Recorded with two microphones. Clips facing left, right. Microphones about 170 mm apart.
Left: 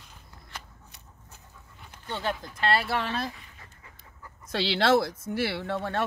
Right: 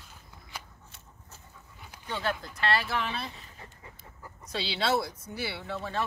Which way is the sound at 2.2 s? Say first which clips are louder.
Left 1 dB; 20° left (ahead or behind).